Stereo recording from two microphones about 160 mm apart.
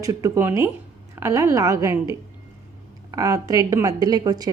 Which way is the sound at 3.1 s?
20° right (ahead or behind).